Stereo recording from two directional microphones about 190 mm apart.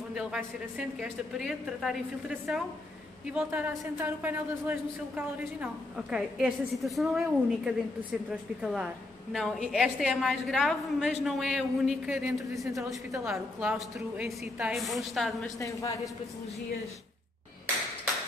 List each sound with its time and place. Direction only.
0.1 s a woman's voice: 5° right (ahead or behind)
1.4 s a woman's voice: centre (ahead or behind)
15.6 s a woman's voice: 15° left (ahead or behind)